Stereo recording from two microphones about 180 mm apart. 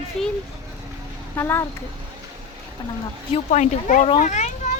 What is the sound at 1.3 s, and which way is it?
Speech, 15° left (ahead or behind).